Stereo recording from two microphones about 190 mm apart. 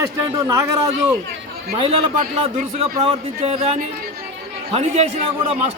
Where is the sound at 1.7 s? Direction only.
30° right (ahead or behind).